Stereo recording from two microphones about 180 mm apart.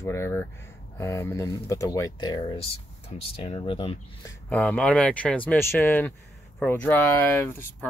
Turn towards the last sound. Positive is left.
turn(degrees=10)  # may be behind; listen again after turning